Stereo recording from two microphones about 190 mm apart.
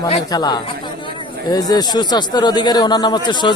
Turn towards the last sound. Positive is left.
turn(degrees=25)  # may be behind; listen again after turning